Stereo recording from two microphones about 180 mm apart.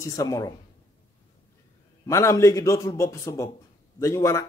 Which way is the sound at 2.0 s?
15° left (ahead or behind).